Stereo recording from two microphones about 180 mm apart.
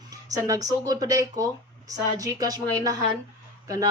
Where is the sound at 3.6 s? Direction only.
20° right (ahead or behind).